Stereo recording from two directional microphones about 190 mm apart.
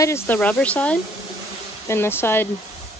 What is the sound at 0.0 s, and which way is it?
Speech, 10° left (ahead or behind).